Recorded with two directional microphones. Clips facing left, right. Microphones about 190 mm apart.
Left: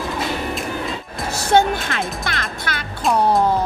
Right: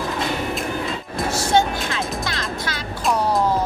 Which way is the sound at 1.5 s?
60° left (ahead or behind).